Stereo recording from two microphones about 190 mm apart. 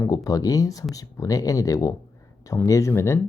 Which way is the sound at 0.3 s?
20° left (ahead or behind).